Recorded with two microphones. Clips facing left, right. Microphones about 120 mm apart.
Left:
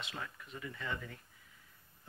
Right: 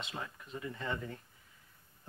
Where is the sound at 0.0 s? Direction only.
25° right (ahead or behind).